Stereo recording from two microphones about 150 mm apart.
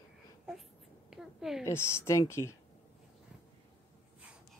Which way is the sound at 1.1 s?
5° right (ahead or behind).